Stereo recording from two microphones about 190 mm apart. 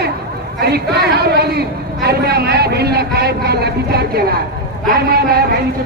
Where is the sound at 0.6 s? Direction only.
55° right (ahead or behind).